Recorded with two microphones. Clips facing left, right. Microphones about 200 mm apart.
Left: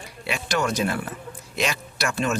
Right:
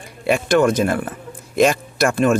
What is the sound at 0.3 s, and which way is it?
Speech, 50° right (ahead or behind).